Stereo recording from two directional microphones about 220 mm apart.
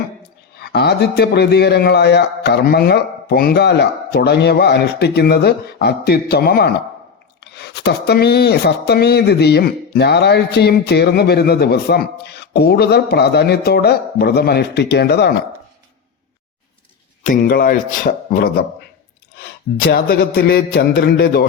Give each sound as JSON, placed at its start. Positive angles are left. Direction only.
{"t": 0.5, "sound": "speech", "side_deg": 50}
{"t": 17.2, "sound": "speech", "side_deg": 40}